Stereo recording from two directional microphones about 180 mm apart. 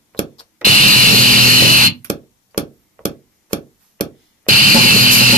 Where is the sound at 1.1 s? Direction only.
50° right (ahead or behind).